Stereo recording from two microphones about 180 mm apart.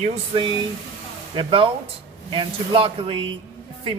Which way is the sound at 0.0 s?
30° right (ahead or behind).